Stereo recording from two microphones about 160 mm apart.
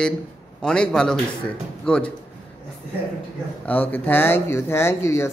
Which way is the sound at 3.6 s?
10° left (ahead or behind).